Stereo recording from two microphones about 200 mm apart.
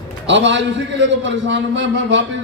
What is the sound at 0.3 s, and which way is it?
A man's voice, 65° right (ahead or behind).